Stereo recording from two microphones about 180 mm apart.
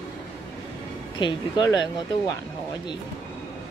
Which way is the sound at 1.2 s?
25° left (ahead or behind).